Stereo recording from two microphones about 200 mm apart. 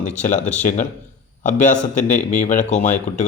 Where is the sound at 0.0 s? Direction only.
40° left (ahead or behind).